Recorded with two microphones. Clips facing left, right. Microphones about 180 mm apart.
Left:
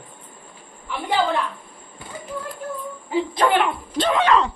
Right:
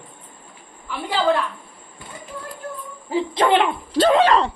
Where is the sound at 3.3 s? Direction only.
25° right (ahead or behind).